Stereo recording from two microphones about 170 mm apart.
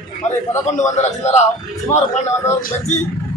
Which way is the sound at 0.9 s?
40° left (ahead or behind).